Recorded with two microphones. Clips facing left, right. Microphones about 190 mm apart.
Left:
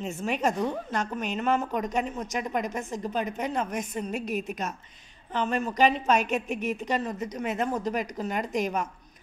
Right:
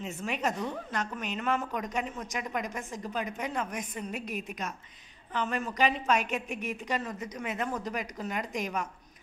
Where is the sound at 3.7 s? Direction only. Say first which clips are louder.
Left 5 dB; 40° left (ahead or behind).